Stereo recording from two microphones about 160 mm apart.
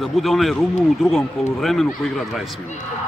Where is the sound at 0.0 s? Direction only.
Centre (ahead or behind).